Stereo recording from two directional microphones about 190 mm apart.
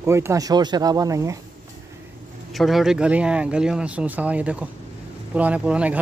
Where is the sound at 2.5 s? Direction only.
Centre (ahead or behind).